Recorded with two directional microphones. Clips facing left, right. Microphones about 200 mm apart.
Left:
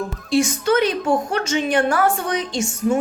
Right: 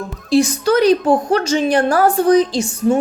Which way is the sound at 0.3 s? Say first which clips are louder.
Right 4 dB; 35° right (ahead or behind).